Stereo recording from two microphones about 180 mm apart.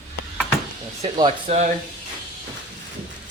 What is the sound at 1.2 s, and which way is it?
Speech, 40° right (ahead or behind).